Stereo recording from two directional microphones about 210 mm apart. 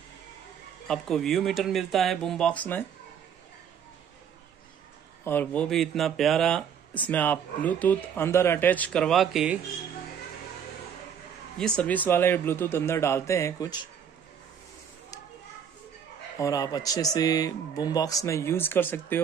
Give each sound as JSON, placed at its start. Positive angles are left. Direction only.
{"t": 0.8, "sound": "speech", "side_deg": 0}
{"t": 5.2, "sound": "speech", "side_deg": 10}
{"t": 11.5, "sound": "speech", "side_deg": 5}
{"t": 16.3, "sound": "speech", "side_deg": 15}